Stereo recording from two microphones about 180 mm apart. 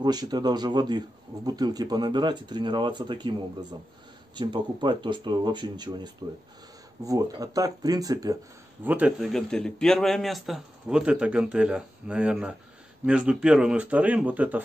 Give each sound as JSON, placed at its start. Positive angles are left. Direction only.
{"t": 0.0, "sound": "a man's voice", "side_deg": -20}
{"t": 4.4, "sound": "a man's voice", "side_deg": -25}
{"t": 8.8, "sound": "a man's voice", "side_deg": -10}